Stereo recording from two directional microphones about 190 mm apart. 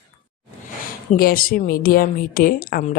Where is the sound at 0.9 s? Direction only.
50° left (ahead or behind).